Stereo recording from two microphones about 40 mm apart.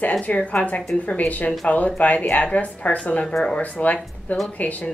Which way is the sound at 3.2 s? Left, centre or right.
Centre.